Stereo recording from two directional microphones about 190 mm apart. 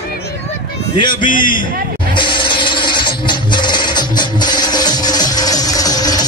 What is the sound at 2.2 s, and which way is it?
Music, 25° left (ahead or behind).